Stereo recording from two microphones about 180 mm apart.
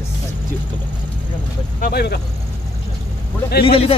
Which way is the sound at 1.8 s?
65° left (ahead or behind).